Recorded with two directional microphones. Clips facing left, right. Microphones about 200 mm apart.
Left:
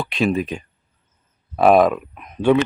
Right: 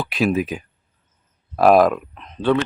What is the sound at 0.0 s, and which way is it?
Speech, centre (ahead or behind).